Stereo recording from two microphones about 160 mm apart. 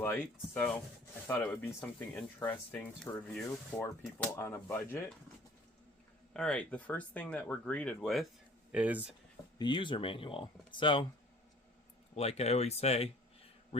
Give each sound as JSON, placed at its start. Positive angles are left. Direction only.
{"t": 0.0, "sound": "speech", "side_deg": 15}
{"t": 6.3, "sound": "speech", "side_deg": 5}
{"t": 9.6, "sound": "speech", "side_deg": 30}
{"t": 12.1, "sound": "speech", "side_deg": 40}